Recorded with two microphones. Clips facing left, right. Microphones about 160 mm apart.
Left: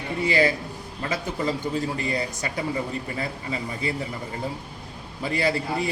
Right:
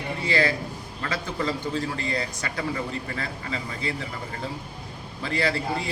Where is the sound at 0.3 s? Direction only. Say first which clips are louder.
Left 2 dB; 15° left (ahead or behind).